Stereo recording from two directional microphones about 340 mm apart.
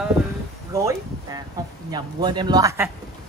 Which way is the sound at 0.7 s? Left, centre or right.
Centre.